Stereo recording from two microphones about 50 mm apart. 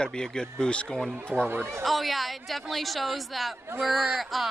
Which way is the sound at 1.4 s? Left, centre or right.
Right.